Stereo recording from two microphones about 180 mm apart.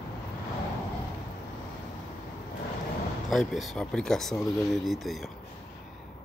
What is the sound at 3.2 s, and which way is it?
Speech, centre (ahead or behind).